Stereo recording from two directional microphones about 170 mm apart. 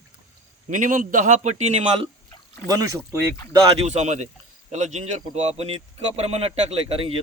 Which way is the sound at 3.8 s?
40° right (ahead or behind).